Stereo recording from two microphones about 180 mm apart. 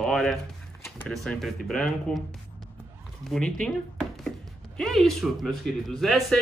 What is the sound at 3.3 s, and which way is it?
Speech, centre (ahead or behind).